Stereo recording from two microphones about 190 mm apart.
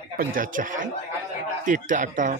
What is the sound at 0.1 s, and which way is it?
Speech, 45° right (ahead or behind).